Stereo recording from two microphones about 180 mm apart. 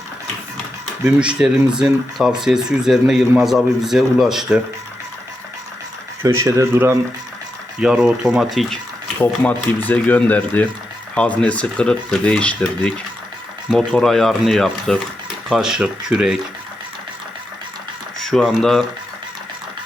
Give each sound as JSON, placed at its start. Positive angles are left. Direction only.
{"t": 1.0, "sound": "speech", "side_deg": -5}
{"t": 6.2, "sound": "speech", "side_deg": -15}
{"t": 9.1, "sound": "speech", "side_deg": 10}
{"t": 18.2, "sound": "speech", "side_deg": 5}